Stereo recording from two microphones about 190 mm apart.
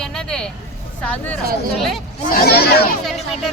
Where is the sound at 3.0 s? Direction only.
Centre (ahead or behind).